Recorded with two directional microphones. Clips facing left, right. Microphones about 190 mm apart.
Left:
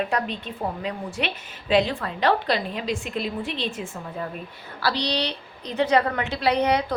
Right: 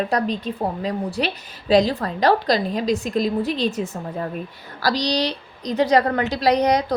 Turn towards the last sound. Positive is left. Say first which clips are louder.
# right 4 dB
turn(degrees=-40)  # may be behind; listen again after turning